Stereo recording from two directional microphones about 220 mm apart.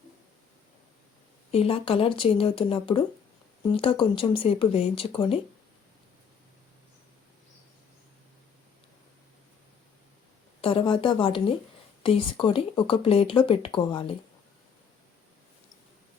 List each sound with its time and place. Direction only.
1.5 s speech: 25° left (ahead or behind)
10.6 s speech: 25° left (ahead or behind)